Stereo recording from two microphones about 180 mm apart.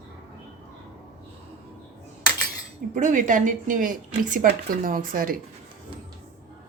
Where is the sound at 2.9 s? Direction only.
45° right (ahead or behind).